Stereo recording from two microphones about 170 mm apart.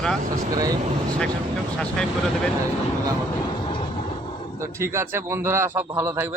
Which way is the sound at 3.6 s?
30° left (ahead or behind).